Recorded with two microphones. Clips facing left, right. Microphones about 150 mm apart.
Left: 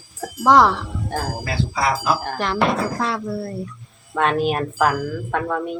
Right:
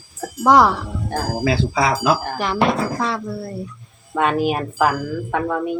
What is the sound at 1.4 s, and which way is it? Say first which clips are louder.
Speech: right 8 dB; 90° right.